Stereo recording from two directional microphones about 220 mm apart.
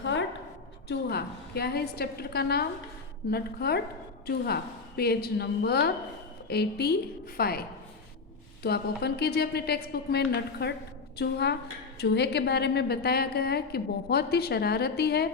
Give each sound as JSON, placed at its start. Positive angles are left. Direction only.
{"t": 0.0, "sound": "a sound", "side_deg": 55}
{"t": 0.9, "sound": "a woman's voice", "side_deg": 45}
{"t": 8.6, "sound": "a woman's voice", "side_deg": 45}